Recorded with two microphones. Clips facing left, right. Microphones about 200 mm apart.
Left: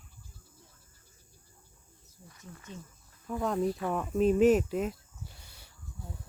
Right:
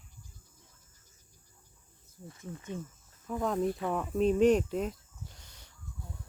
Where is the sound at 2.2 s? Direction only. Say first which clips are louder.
Right 7 dB; 25° right (ahead or behind).